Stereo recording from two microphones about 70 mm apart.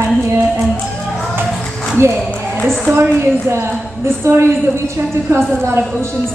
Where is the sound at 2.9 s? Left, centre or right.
Right.